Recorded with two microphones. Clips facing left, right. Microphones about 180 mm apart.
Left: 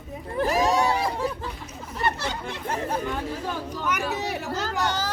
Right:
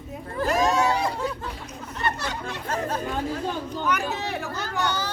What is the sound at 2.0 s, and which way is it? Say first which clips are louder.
Chatter: left 1 dB; 25° left (ahead or behind).